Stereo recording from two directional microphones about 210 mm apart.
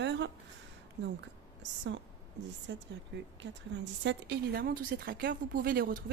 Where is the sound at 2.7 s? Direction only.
60° right (ahead or behind).